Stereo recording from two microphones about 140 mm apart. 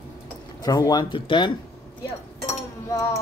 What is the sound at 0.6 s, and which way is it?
Speech, 25° left (ahead or behind).